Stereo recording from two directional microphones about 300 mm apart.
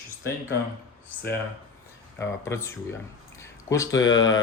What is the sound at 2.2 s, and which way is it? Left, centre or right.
Speech, centre.